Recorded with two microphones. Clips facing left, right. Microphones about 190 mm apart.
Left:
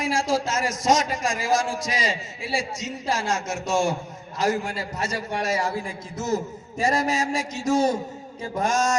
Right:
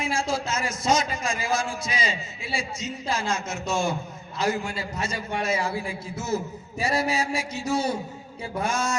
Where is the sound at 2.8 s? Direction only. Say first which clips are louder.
Left 2 dB; 90° left.